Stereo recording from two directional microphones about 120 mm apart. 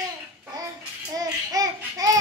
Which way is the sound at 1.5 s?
30° right (ahead or behind).